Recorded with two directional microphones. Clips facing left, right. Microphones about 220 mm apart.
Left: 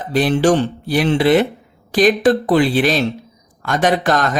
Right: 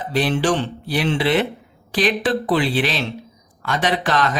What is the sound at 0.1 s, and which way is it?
A man's voice, 45° left (ahead or behind).